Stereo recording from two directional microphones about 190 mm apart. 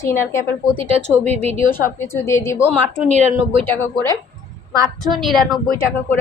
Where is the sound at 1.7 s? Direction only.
10° left (ahead or behind).